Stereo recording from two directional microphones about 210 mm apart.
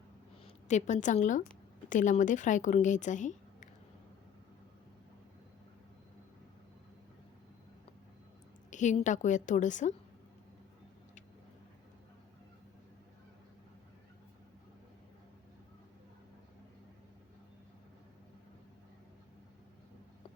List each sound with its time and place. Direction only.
0.4 s a woman's voice: 35° left (ahead or behind)
8.7 s a woman's voice: 35° left (ahead or behind)